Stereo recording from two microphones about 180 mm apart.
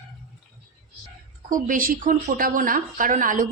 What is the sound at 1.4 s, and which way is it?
Speech, 50° right (ahead or behind).